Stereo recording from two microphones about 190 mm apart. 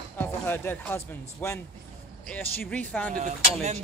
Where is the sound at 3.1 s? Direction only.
50° right (ahead or behind).